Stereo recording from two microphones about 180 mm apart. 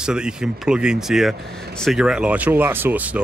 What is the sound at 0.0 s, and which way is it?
A man's voice, 5° right (ahead or behind).